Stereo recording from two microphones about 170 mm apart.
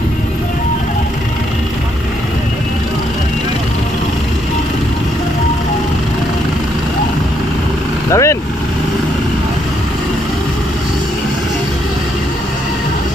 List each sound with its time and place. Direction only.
8.1 s vehicle: 15° left (ahead or behind)